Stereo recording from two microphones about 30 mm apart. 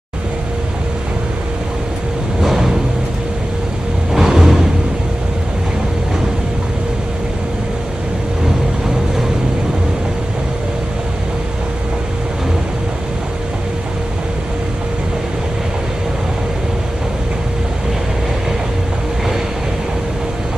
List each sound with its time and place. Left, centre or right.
2.4 s vehicle: centre
4.1 s music: centre